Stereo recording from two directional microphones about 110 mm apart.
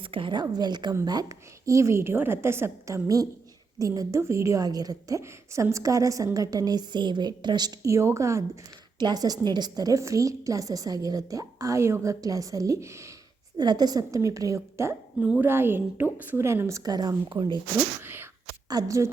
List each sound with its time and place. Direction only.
0.0 s a woman's voice: 50° right (ahead or behind)
0.4 s a woman's voice: 40° right (ahead or behind)
9.0 s a woman's voice: 40° right (ahead or behind)
13.6 s a woman's voice: 40° right (ahead or behind)
15.2 s a woman's voice: 15° right (ahead or behind); by 17.6 s 45° right (ahead or behind)
18.0 s speech: 20° right (ahead or behind)
18.7 s a woman's voice: 30° right (ahead or behind)